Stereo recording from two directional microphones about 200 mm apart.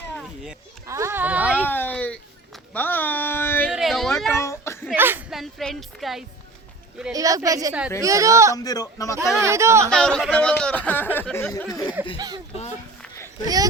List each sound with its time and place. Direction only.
0.9 s speech: 15° right (ahead or behind)
1.6 s a sound: 10° left (ahead or behind)
3.6 s a sound: 5° right (ahead or behind)
4.3 s a sound: 15° left (ahead or behind)
4.9 s speech: 10° right (ahead or behind)
7.1 s a woman's voice: 15° right (ahead or behind)
8.5 s speech: 20° left (ahead or behind)
9.4 s a woman's voice: 15° right (ahead or behind)
9.9 s speech: 5° left (ahead or behind)
12.1 s speech: 20° right (ahead or behind)